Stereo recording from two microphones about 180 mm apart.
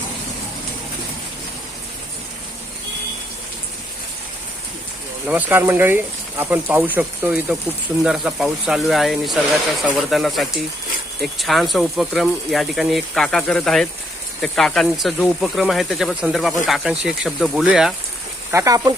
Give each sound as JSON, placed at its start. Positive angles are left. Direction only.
{"t": 5.3, "sound": "speech", "side_deg": -10}
{"t": 18.5, "sound": "speech", "side_deg": -20}